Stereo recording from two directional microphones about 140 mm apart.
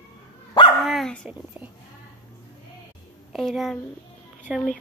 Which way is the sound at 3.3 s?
Centre (ahead or behind).